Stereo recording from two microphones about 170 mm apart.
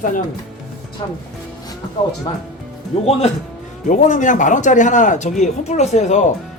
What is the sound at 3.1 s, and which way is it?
Speech, 35° left (ahead or behind).